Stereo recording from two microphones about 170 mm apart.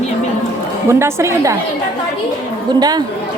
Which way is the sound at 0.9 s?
15° right (ahead or behind).